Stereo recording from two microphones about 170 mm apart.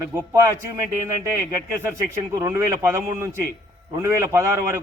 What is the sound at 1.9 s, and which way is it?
A man's voice, 20° right (ahead or behind).